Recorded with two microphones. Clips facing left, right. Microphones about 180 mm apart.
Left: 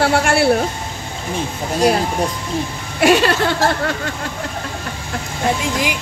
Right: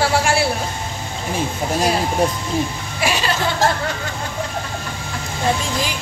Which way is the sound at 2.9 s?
65° left (ahead or behind).